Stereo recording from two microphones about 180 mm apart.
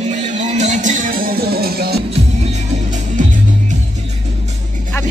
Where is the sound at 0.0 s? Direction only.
40° right (ahead or behind); by 2.0 s 60° right (ahead or behind).